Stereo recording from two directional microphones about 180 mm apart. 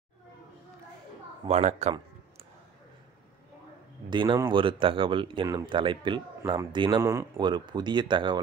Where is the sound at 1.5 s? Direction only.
40° right (ahead or behind).